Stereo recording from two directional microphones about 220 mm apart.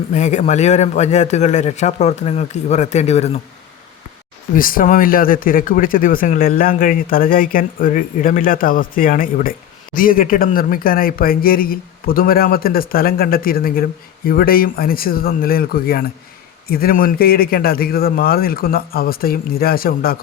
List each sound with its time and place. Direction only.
0.1 s speech: 35° left (ahead or behind)
4.5 s a man's voice: 40° left (ahead or behind)